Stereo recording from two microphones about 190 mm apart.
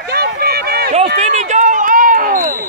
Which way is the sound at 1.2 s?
40° right (ahead or behind).